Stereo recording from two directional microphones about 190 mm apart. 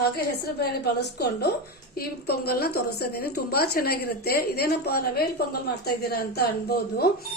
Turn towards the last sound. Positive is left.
turn(degrees=55)  # may be behind; listen again after turning